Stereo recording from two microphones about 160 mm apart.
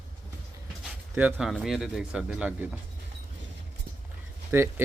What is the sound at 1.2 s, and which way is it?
A man's voice, 10° right (ahead or behind).